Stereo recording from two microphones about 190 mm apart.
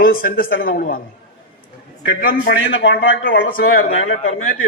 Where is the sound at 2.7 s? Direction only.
80° left.